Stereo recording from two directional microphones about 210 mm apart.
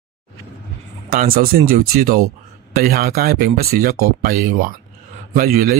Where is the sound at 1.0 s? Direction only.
45° right (ahead or behind).